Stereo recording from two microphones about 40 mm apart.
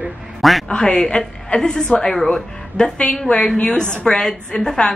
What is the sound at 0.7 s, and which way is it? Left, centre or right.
A woman's voice, centre.